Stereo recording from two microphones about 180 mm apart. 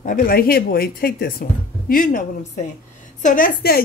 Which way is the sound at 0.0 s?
50° left (ahead or behind).